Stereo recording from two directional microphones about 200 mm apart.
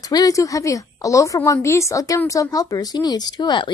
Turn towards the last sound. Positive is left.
turn(degrees=20)  # may be behind; listen again after turning